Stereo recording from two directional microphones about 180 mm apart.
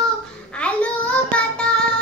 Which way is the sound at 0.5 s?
5° left (ahead or behind).